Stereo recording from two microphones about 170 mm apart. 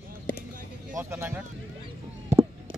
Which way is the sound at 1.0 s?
15° right (ahead or behind).